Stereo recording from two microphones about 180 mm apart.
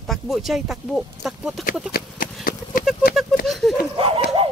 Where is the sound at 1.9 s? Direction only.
60° left (ahead or behind).